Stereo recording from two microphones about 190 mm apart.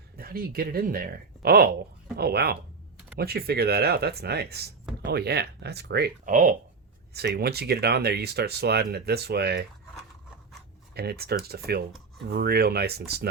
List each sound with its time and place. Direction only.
0.2 s speech: 50° right (ahead or behind)
7.1 s speech: 60° right (ahead or behind)
10.9 s speech: 55° right (ahead or behind)